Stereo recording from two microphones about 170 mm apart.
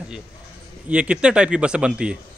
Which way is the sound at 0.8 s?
5° right (ahead or behind).